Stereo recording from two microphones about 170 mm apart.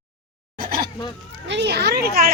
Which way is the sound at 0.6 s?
60° right (ahead or behind).